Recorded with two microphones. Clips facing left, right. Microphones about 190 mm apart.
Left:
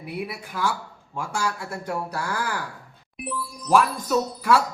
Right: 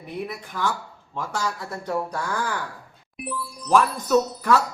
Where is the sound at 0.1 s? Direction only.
10° left (ahead or behind).